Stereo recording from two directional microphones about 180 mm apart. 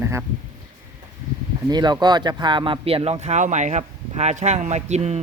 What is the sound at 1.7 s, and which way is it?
Speech, 25° right (ahead or behind).